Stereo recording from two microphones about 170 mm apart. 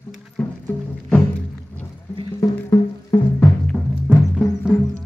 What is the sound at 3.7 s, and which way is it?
Music, 10° left (ahead or behind).